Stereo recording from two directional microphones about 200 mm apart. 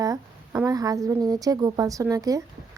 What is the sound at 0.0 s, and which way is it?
Speech, 15° right (ahead or behind).